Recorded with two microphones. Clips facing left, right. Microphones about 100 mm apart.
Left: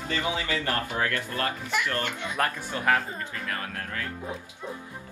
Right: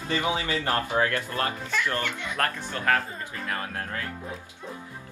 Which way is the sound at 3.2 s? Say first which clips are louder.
Right 1 dB; 25° right (ahead or behind).